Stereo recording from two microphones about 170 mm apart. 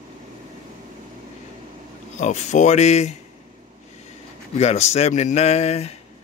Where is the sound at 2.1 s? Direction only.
45° left (ahead or behind).